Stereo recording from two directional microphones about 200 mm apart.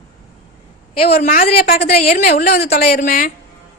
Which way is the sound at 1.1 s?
45° left (ahead or behind).